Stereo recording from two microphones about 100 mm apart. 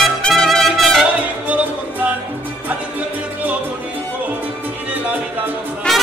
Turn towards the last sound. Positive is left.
turn(degrees=0)  # may be behind; listen again after turning